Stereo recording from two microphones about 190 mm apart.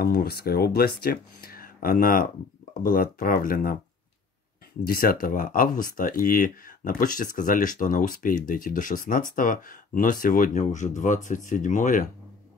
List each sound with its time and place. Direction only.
0.0 s speech: 55° left (ahead or behind)
4.8 s speech: 50° left (ahead or behind)